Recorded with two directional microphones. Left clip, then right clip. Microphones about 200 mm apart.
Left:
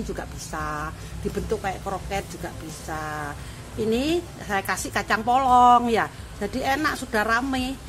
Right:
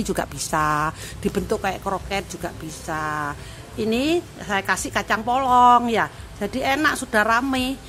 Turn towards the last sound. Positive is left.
turn(degrees=-20)  # may be behind; listen again after turning